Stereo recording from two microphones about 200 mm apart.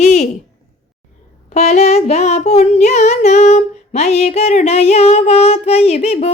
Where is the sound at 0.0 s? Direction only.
35° left (ahead or behind).